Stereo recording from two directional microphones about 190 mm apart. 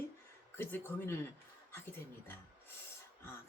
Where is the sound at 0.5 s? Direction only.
10° left (ahead or behind).